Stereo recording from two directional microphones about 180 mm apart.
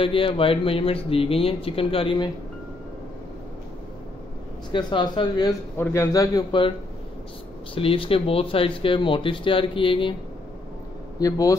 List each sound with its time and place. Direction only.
0.0 s speech: 30° left (ahead or behind)
4.7 s speech: 25° left (ahead or behind)
7.7 s speech: 30° left (ahead or behind)
11.1 s speech: 20° left (ahead or behind)